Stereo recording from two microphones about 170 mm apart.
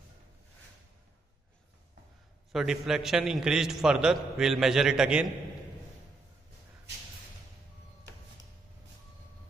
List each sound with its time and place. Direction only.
2.5 s a man's voice: 5° right (ahead or behind)